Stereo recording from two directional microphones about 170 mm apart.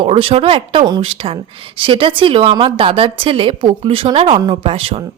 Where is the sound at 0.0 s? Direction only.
30° right (ahead or behind).